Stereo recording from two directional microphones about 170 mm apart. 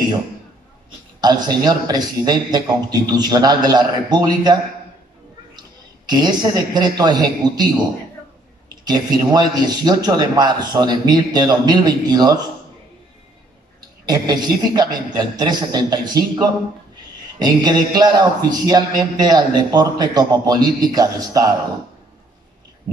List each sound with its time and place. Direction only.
1.2 s a man's voice: 25° right (ahead or behind)
6.0 s a man's voice: 25° right (ahead or behind)
8.8 s a man's voice: 25° right (ahead or behind)
14.0 s a man's voice: 25° right (ahead or behind)